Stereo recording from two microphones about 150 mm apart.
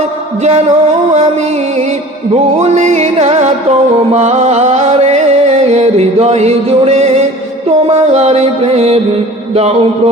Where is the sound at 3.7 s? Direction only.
40° right (ahead or behind).